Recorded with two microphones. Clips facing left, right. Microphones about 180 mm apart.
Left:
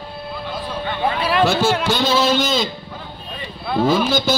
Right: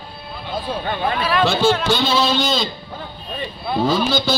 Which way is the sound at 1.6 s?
10° left (ahead or behind).